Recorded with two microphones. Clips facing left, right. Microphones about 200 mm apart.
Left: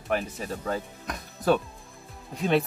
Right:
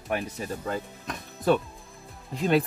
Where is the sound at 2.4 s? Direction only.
Centre (ahead or behind).